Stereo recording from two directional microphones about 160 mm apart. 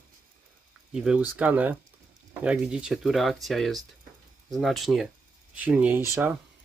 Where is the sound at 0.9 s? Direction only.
5° right (ahead or behind).